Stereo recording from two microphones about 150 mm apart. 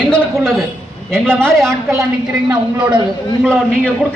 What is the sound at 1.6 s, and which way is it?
Speech, 20° right (ahead or behind).